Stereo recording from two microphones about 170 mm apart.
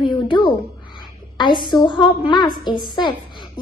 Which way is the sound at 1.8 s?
25° left (ahead or behind).